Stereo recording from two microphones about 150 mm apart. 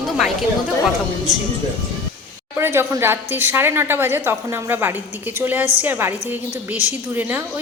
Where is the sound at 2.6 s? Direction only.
15° right (ahead or behind).